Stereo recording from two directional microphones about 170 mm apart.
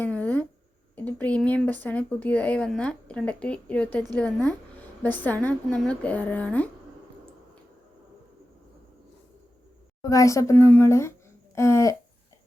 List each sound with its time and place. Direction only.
0.0 s a sound: 10° left (ahead or behind)
1.0 s a woman's voice: 10° left (ahead or behind)
10.0 s a woman's voice: 20° left (ahead or behind)